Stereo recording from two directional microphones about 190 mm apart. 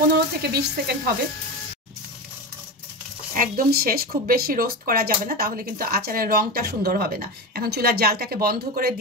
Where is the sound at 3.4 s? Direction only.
50° right (ahead or behind).